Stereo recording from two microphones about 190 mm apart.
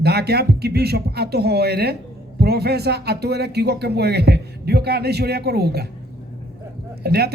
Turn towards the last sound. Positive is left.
turn(degrees=-55)  # may be behind; listen again after turning